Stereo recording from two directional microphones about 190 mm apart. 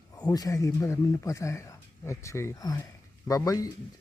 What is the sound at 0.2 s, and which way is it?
Speech, 20° left (ahead or behind).